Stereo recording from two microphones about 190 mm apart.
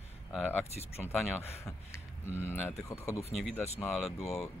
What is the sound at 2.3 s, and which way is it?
Speech, 10° left (ahead or behind).